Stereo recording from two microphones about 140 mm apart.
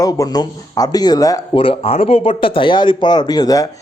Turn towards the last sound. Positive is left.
turn(degrees=30)  # may be behind; listen again after turning